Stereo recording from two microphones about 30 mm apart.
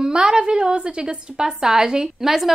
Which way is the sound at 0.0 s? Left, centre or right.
Right.